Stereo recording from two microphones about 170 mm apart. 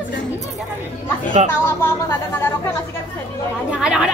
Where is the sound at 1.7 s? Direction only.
15° left (ahead or behind).